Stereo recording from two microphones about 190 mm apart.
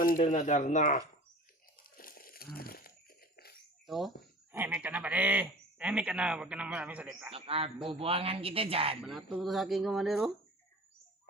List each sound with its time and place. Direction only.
0.3 s speech: 40° left (ahead or behind)
2.0 s a sound: 50° left (ahead or behind)
3.8 s speech: centre (ahead or behind)
7.3 s a man's voice: 30° right (ahead or behind)
9.0 s speech: centre (ahead or behind)